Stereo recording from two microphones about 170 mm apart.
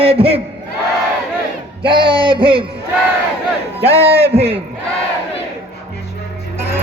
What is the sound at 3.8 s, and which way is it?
Speech, 35° right (ahead or behind).